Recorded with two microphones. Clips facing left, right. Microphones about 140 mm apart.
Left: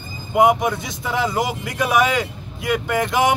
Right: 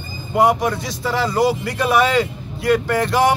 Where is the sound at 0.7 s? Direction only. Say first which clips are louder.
Right 2 dB; 20° left (ahead or behind).